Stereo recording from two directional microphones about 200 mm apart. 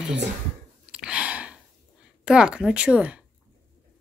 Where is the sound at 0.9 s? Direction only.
5° right (ahead or behind).